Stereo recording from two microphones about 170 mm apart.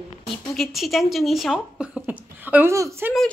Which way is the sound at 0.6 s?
Centre (ahead or behind).